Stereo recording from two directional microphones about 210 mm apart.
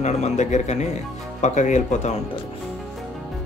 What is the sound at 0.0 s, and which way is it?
Speech, 35° left (ahead or behind).